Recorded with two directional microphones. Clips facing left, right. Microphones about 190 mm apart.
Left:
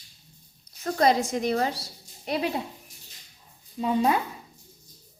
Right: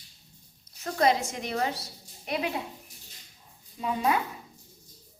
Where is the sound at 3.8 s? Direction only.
30° left (ahead or behind).